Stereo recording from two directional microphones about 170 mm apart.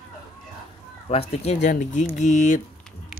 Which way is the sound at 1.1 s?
35° left (ahead or behind).